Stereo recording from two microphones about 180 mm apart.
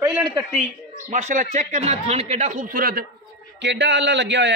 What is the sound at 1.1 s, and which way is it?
Speech, 40° right (ahead or behind).